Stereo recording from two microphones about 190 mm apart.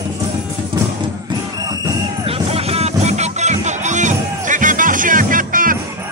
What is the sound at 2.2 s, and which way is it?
Music, 30° right (ahead or behind).